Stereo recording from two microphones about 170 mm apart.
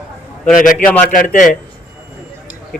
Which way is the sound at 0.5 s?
50° left (ahead or behind).